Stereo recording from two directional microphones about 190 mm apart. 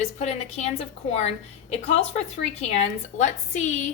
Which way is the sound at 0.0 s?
35° left (ahead or behind).